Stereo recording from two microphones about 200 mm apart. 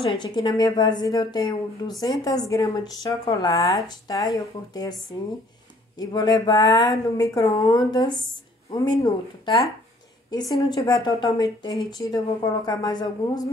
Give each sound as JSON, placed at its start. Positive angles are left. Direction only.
{"t": 0.0, "sound": "speech", "side_deg": 25}
{"t": 5.9, "sound": "speech", "side_deg": 20}
{"t": 10.7, "sound": "speech", "side_deg": 20}